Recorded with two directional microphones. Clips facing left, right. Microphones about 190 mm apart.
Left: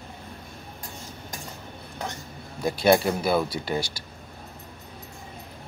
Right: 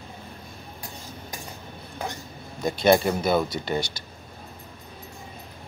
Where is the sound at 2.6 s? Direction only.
5° left (ahead or behind).